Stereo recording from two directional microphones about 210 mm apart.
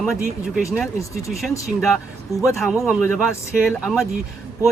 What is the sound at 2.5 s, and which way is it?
Speech, centre (ahead or behind).